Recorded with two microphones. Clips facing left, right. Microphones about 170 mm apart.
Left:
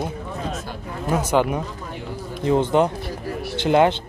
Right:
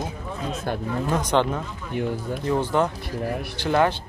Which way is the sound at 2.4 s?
20° left (ahead or behind).